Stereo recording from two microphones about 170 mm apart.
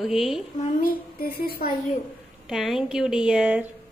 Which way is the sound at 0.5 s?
50° left (ahead or behind).